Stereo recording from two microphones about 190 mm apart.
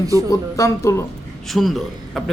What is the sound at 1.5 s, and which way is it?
Speech, centre (ahead or behind).